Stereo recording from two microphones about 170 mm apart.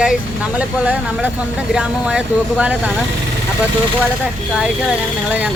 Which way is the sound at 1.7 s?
5° right (ahead or behind).